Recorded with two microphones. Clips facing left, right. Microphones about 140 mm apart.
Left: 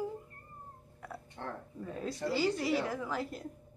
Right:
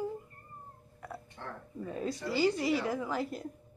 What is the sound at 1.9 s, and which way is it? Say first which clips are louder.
A woman's voice: even; 5° right (ahead or behind).